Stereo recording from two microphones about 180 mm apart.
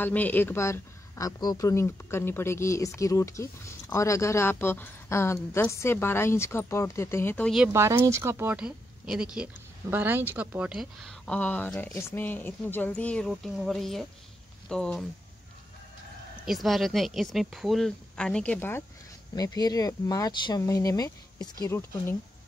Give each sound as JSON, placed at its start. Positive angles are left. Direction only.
{"t": 0.0, "sound": "speech", "side_deg": 10}
{"t": 7.5, "sound": "speech", "side_deg": -10}
{"t": 16.4, "sound": "speech", "side_deg": 0}